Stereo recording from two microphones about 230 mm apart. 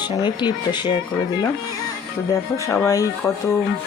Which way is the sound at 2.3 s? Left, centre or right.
Centre.